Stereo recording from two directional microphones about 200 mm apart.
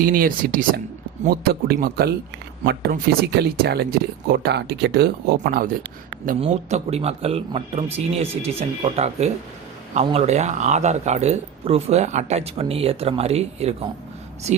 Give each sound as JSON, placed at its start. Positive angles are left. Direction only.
{"t": 0.0, "sound": "speech", "side_deg": -45}
{"t": 6.4, "sound": "speech", "side_deg": -35}